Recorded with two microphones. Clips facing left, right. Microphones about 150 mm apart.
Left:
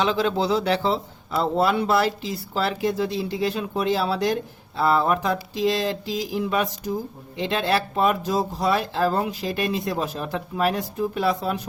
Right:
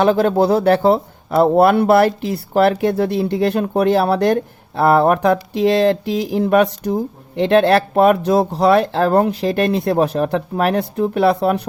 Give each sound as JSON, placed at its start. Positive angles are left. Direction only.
{"t": 0.0, "sound": "speech", "side_deg": -55}